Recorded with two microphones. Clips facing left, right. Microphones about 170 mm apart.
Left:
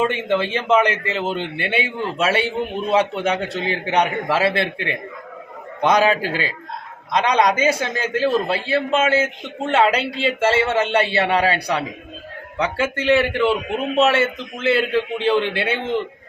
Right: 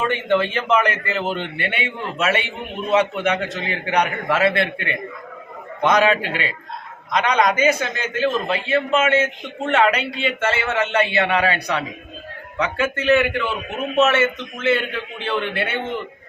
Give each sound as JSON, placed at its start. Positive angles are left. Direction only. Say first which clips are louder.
{"t": 0.0, "sound": "a man's voice", "louder": "even", "side_deg": 25}